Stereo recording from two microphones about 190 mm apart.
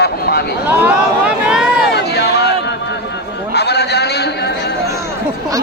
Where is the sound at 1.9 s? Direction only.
60° left (ahead or behind).